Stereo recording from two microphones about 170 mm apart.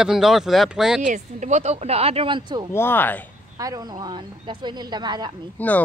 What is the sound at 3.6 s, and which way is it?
Speech, 20° right (ahead or behind).